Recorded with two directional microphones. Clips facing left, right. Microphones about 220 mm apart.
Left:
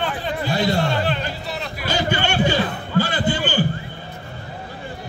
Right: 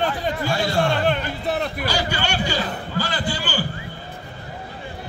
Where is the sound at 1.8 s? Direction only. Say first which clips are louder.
Left 2 dB; 20° left (ahead or behind).